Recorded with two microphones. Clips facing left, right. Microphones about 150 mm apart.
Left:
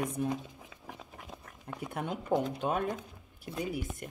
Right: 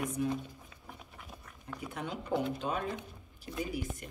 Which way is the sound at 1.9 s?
50° left (ahead or behind).